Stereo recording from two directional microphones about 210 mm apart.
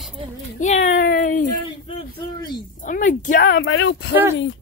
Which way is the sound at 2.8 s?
40° left (ahead or behind).